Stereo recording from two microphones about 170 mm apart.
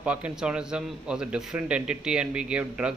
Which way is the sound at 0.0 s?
5° right (ahead or behind).